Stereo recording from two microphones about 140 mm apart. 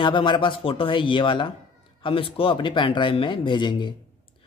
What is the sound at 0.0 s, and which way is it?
A man's voice, 35° left (ahead or behind).